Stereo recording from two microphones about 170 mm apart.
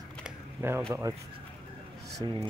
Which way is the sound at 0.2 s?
15° right (ahead or behind).